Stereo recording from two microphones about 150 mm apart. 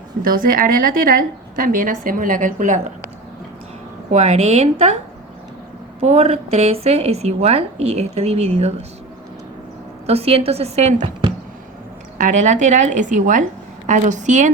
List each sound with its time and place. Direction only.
0.2 s a woman's voice: 70° right (ahead or behind)
4.1 s a woman's voice: 45° right (ahead or behind)
6.0 s a woman's voice: 45° right (ahead or behind)
10.1 s a woman's voice: 40° right (ahead or behind)
12.1 s a woman's voice: 55° right (ahead or behind)